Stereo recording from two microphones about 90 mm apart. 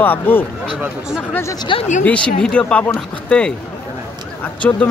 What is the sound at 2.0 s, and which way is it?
Speech, 10° left (ahead or behind).